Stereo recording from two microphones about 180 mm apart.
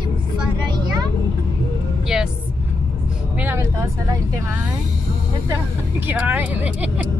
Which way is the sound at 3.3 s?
15° right (ahead or behind).